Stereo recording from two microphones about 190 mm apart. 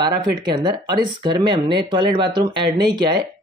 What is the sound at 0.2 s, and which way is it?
Speech, 25° right (ahead or behind).